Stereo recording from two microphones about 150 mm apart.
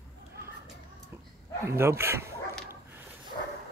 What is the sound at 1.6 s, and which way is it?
Speech, 15° right (ahead or behind).